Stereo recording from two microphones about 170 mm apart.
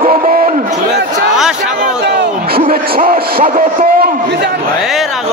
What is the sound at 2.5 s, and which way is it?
Speech, 55° right (ahead or behind).